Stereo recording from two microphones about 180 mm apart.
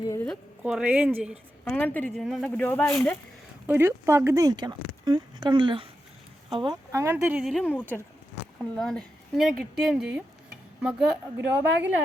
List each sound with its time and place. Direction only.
0.0 s a sound: 20° left (ahead or behind)
0.6 s speech: 5° right (ahead or behind)
1.7 s speech: 10° left (ahead or behind)
3.7 s speech: 15° right (ahead or behind)
11.3 s speech: 10° right (ahead or behind)